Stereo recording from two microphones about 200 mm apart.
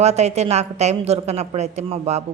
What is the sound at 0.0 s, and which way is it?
A woman's voice, 35° right (ahead or behind).